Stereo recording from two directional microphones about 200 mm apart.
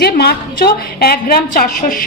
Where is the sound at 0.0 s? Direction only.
50° left (ahead or behind).